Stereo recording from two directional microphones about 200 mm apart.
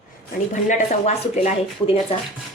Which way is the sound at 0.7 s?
35° left (ahead or behind).